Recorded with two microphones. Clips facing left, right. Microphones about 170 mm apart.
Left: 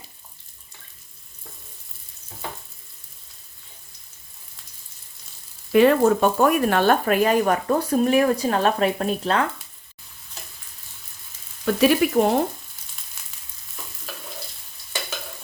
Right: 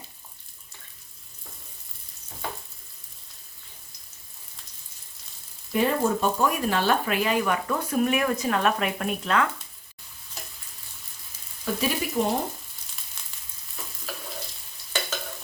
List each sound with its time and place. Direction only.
5.7 s speech: 80° left
6.0 s speech: 65° left (ahead or behind); by 9.5 s 30° left (ahead or behind)
11.6 s speech: 70° left (ahead or behind)
13.2 s frying: 5° left (ahead or behind)